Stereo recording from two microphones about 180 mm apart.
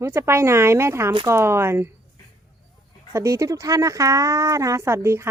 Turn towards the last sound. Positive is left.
turn(degrees=-15)  # may be behind; listen again after turning